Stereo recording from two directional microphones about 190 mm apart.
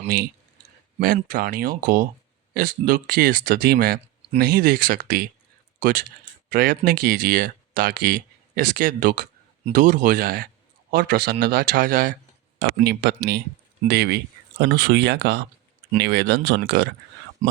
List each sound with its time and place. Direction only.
0.9 s speech: 45° right (ahead or behind)
12.5 s speech: 60° right (ahead or behind)
17.4 s speech: 45° right (ahead or behind)